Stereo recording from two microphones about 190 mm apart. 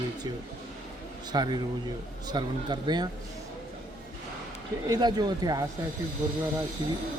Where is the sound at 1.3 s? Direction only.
20° right (ahead or behind).